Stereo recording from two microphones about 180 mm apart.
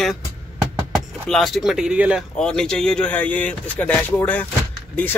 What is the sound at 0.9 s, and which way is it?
Speech, centre (ahead or behind).